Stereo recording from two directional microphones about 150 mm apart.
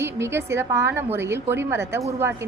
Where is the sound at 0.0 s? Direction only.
15° right (ahead or behind).